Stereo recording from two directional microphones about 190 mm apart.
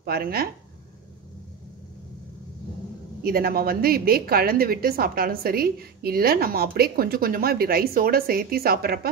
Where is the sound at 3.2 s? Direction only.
50° right (ahead or behind).